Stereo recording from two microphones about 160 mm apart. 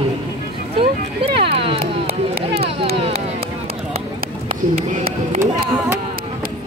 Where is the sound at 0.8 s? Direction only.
35° right (ahead or behind).